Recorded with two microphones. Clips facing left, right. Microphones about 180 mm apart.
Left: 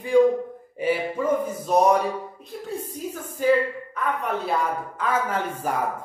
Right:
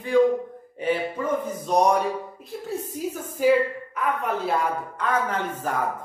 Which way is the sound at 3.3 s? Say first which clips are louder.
Right 1 dB; 5° right (ahead or behind).